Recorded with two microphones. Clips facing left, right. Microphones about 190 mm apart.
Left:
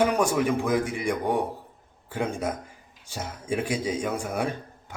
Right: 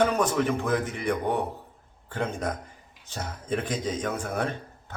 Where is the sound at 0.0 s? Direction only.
10° left (ahead or behind).